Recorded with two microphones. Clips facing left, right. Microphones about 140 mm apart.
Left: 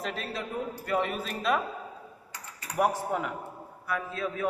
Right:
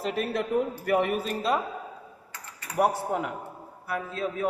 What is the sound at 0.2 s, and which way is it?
A man's voice, 60° right (ahead or behind).